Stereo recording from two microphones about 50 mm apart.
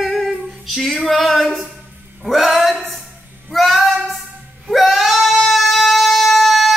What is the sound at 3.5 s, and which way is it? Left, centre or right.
Female singing, centre.